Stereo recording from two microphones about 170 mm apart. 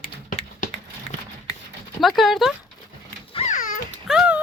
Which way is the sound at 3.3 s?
45° left (ahead or behind).